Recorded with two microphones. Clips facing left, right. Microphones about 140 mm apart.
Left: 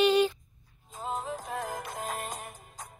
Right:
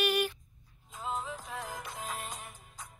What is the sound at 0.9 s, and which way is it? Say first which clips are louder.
Music: left 3 dB; 45° left (ahead or behind).